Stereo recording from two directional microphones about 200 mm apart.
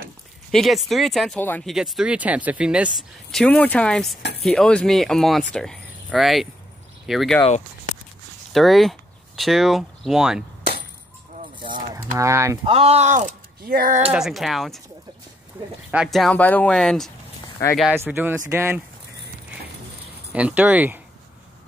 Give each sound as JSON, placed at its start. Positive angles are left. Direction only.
{"t": 0.5, "sound": "speech", "side_deg": 0}
{"t": 7.4, "sound": "a sound", "side_deg": 35}
{"t": 8.5, "sound": "speech", "side_deg": 0}
{"t": 11.6, "sound": "a sound", "side_deg": -25}
{"t": 12.2, "sound": "speech", "side_deg": -15}
{"t": 12.6, "sound": "speech", "side_deg": -30}
{"t": 14.1, "sound": "speech", "side_deg": 0}
{"t": 15.9, "sound": "speech", "side_deg": 0}
{"t": 17.6, "sound": "speech", "side_deg": 15}
{"t": 18.0, "sound": "speech", "side_deg": -10}
{"t": 20.3, "sound": "speech", "side_deg": -5}